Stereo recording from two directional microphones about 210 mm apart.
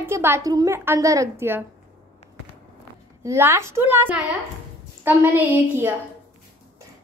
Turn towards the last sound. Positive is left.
turn(degrees=-10)  # may be behind; listen again after turning